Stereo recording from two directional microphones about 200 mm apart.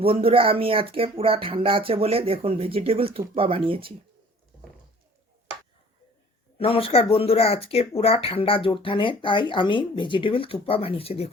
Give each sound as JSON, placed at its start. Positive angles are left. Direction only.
{"t": 0.0, "sound": "speech", "side_deg": -25}
{"t": 6.6, "sound": "speech", "side_deg": 30}